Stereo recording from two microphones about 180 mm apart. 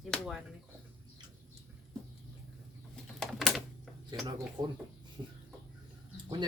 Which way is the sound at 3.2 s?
Centre (ahead or behind).